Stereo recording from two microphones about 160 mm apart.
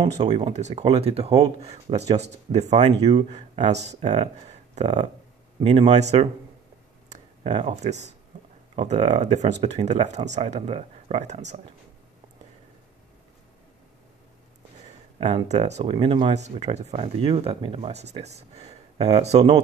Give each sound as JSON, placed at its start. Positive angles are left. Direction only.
{"t": 0.4, "sound": "speech", "side_deg": -45}
{"t": 7.4, "sound": "speech", "side_deg": -30}
{"t": 7.7, "sound": "speech", "side_deg": -45}
{"t": 15.1, "sound": "speech", "side_deg": -35}
{"t": 16.3, "sound": "speech", "side_deg": -45}